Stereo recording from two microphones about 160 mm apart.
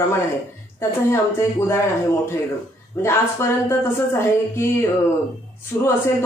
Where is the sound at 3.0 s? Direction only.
15° left (ahead or behind).